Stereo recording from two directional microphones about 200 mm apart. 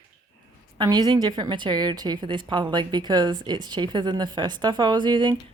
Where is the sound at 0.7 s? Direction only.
20° right (ahead or behind).